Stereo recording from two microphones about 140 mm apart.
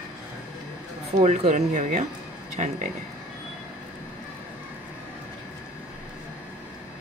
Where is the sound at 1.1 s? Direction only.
55° right (ahead or behind).